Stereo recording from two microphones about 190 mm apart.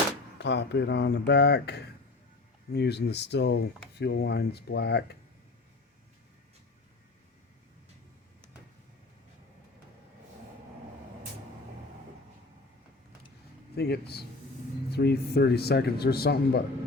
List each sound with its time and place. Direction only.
0.3 s a man's voice: 65° left (ahead or behind)
13.7 s a man's voice: 60° left (ahead or behind)